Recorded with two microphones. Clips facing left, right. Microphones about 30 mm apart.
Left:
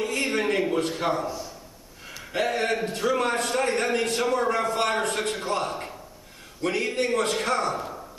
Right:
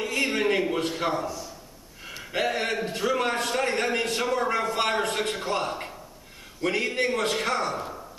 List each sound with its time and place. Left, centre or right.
0.0 s a sound: centre
1.2 s a man's voice: centre
2.0 s a man's voice: centre